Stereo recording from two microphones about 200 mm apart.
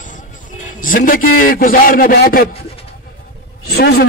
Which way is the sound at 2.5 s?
30° left (ahead or behind).